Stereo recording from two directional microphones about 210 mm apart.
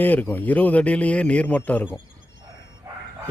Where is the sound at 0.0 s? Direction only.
10° left (ahead or behind).